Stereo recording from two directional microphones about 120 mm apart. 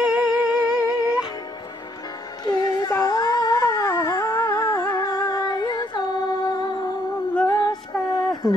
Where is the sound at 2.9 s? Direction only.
30° left (ahead or behind).